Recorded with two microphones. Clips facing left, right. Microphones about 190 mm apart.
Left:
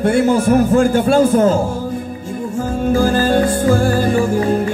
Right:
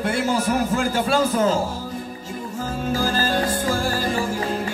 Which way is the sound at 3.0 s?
55° left (ahead or behind).